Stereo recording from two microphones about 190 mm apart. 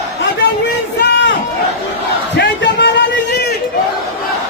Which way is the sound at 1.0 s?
65° left (ahead or behind).